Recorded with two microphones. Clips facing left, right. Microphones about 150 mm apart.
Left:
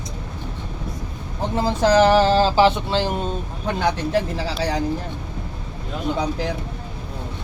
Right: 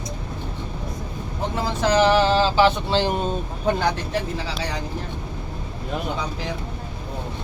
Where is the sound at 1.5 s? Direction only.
35° left (ahead or behind).